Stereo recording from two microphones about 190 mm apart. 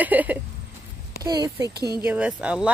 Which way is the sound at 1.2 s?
20° right (ahead or behind).